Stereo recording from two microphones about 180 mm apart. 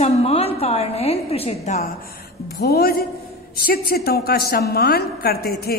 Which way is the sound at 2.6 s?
60° left (ahead or behind).